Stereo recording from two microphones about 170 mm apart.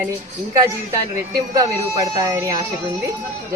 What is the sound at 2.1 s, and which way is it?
Speech, 20° right (ahead or behind).